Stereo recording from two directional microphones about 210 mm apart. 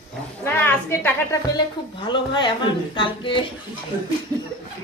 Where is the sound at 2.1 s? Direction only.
20° left (ahead or behind).